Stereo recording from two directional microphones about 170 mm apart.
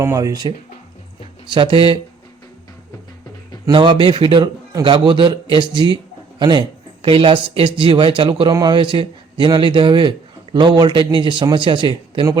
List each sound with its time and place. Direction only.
0.0 s speech: 20° right (ahead or behind)
3.7 s speech: 30° right (ahead or behind)